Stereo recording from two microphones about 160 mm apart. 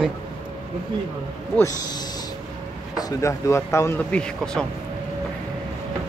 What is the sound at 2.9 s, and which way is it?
Speech, 20° left (ahead or behind).